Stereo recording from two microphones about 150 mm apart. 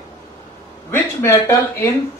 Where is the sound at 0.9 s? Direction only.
15° left (ahead or behind).